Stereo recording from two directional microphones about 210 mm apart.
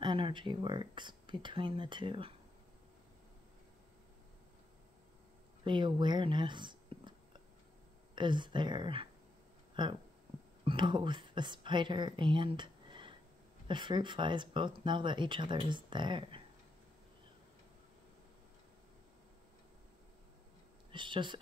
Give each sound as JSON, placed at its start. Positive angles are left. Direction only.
{"t": 0.0, "sound": "speech", "side_deg": -25}
{"t": 5.6, "sound": "speech", "side_deg": -20}
{"t": 20.9, "sound": "speech", "side_deg": -25}